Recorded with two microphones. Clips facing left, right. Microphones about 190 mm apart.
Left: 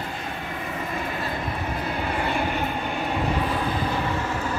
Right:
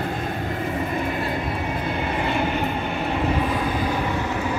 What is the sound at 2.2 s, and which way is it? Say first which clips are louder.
Vehicle: right 2 dB; centre (ahead or behind).